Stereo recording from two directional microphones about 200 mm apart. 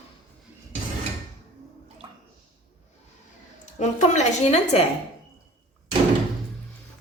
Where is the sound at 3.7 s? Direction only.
35° left (ahead or behind).